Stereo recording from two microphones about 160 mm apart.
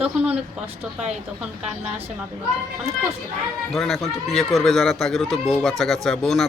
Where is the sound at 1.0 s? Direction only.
5° right (ahead or behind).